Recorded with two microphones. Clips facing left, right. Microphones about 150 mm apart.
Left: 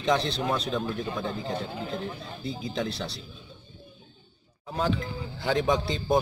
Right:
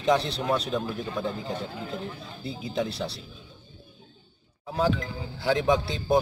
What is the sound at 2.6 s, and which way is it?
Speech, 5° right (ahead or behind).